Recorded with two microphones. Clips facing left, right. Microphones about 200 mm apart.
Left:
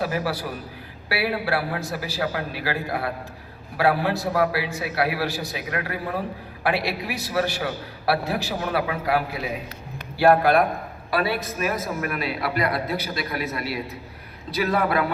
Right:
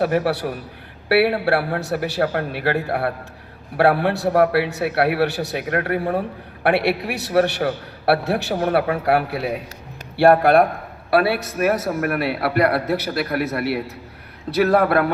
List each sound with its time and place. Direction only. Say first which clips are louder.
0.0 s a man's voice: right 6 dB; 60° right (ahead or behind)
2.2 s a man's voice: right 3 dB; 55° right (ahead or behind)
3.8 s a man's voice: right 4 dB; 65° right (ahead or behind)
6.6 s a man's voice: right 6 dB; 65° right (ahead or behind)